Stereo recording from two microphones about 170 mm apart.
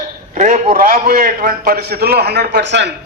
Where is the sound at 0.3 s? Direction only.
50° right (ahead or behind).